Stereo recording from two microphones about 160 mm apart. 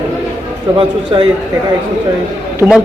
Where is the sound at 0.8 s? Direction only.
35° right (ahead or behind).